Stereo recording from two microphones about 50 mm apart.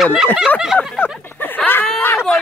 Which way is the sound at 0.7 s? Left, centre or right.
Left.